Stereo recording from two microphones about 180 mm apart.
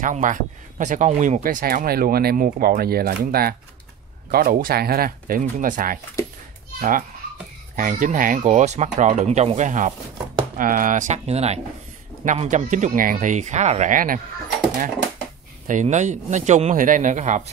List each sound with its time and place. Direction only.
0.0 s a man's voice: 45° right (ahead or behind)
1.4 s speech: 50° right (ahead or behind)
15.6 s speech: 45° right (ahead or behind)